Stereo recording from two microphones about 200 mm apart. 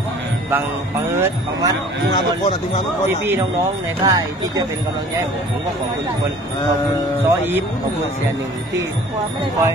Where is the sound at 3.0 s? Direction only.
10° right (ahead or behind).